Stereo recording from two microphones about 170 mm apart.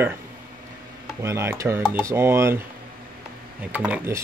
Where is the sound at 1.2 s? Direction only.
15° right (ahead or behind).